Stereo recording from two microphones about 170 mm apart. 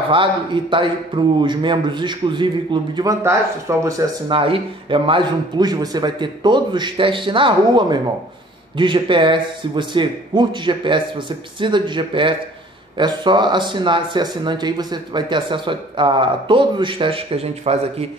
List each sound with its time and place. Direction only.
0.1 s a man's voice: 30° right (ahead or behind)